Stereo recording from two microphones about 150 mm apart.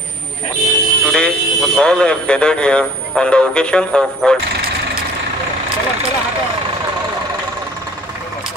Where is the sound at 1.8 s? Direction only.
5° left (ahead or behind).